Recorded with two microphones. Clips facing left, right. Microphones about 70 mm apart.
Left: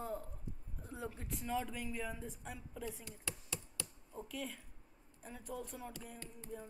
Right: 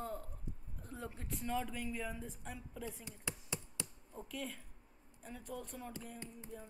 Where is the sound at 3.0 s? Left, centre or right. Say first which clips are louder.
Right 1 dB; right.